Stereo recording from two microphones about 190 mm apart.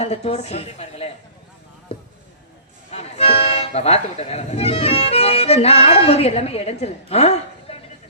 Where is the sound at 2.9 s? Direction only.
35° left (ahead or behind).